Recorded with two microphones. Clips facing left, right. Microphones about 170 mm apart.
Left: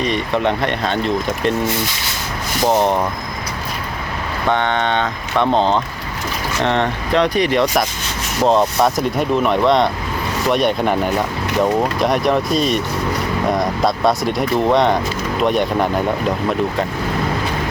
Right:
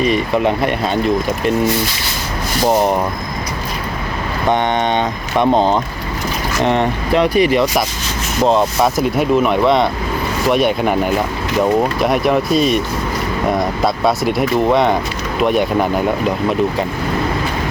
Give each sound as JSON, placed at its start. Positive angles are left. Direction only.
{"t": 0.0, "sound": "speech", "side_deg": -5}
{"t": 4.4, "sound": "speech", "side_deg": -15}